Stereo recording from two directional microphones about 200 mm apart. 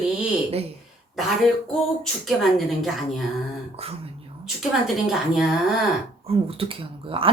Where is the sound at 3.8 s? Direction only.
30° right (ahead or behind).